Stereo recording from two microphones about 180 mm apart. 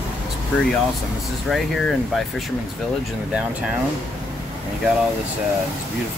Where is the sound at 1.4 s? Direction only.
Centre (ahead or behind).